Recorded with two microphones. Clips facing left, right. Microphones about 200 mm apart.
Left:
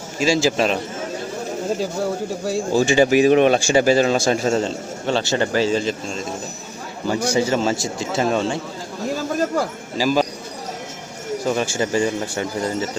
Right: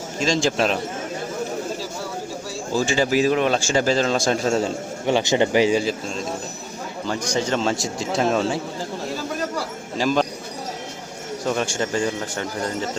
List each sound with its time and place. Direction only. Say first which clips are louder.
0.2 s speech: left 3 dB; 5° left (ahead or behind)
2.7 s speech: left 4 dB; 15° left (ahead or behind)
4.6 s speech: even; 15° right (ahead or behind)
7.1 s speech: left 4 dB; 10° left (ahead or behind)
10.0 s speech: left 2 dB; 5° left (ahead or behind)
11.4 s speech: left 2 dB; 5° left (ahead or behind)